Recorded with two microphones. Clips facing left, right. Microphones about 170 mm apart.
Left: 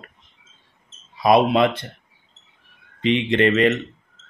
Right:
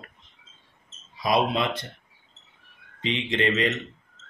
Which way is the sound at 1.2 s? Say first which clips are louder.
Left 8 dB; 60° left (ahead or behind).